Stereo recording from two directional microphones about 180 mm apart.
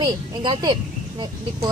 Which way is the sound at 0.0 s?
25° right (ahead or behind).